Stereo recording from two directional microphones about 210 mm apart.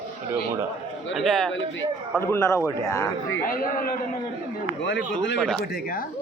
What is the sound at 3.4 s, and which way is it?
Speech, 40° left (ahead or behind).